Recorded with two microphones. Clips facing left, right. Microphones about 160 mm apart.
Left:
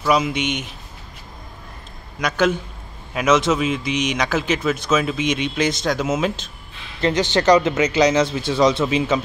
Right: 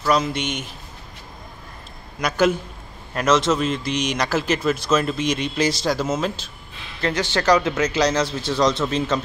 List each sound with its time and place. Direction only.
0.0 s speech: 5° left (ahead or behind)
2.1 s speech: centre (ahead or behind)
7.0 s speech: 20° left (ahead or behind)
7.5 s speech: centre (ahead or behind)